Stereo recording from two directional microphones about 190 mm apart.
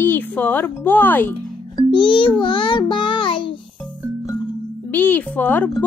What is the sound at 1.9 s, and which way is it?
Music, 25° left (ahead or behind).